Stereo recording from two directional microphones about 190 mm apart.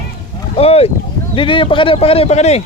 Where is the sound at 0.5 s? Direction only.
30° left (ahead or behind).